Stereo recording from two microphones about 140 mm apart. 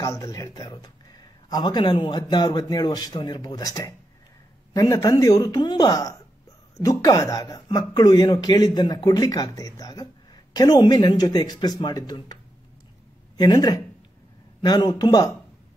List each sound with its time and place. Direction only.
0.0 s a man's voice: 25° left (ahead or behind)
13.4 s speech: 30° left (ahead or behind)